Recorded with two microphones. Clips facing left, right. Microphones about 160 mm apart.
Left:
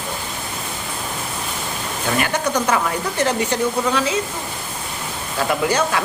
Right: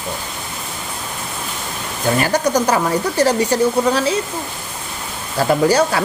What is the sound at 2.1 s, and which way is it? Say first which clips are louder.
Speech: right 4 dB; 35° right (ahead or behind).